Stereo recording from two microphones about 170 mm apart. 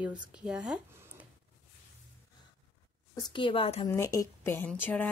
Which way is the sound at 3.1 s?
25° left (ahead or behind).